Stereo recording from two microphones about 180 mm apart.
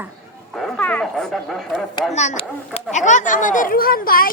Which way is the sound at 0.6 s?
5° left (ahead or behind).